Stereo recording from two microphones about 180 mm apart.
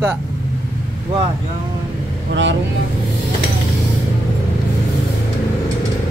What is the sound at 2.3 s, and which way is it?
Speech, 90° right.